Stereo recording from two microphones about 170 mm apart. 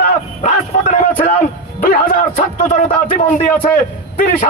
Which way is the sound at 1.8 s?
55° left (ahead or behind).